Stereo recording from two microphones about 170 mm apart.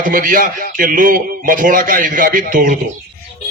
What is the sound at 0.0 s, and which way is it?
A man's voice, 55° right (ahead or behind).